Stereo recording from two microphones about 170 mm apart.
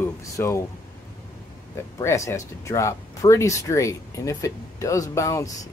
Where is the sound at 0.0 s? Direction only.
15° left (ahead or behind).